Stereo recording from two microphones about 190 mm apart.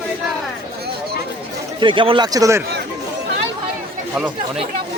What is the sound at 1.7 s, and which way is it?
Speech, 25° right (ahead or behind).